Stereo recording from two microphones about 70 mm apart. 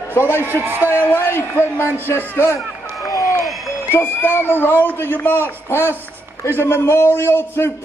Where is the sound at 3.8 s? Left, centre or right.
Left.